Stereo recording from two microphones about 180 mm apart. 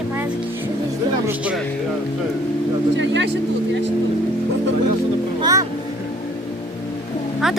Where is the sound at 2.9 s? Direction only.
85° right.